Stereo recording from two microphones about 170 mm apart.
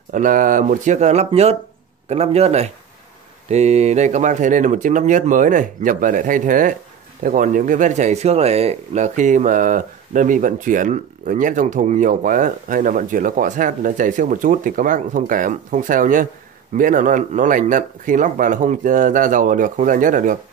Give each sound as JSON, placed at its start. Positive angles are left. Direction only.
{"t": 0.1, "sound": "a man's voice", "side_deg": -50}